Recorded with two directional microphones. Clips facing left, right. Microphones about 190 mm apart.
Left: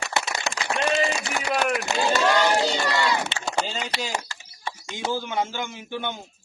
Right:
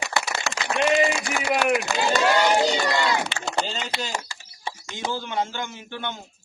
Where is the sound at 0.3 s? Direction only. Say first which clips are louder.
Even; 20° left (ahead or behind).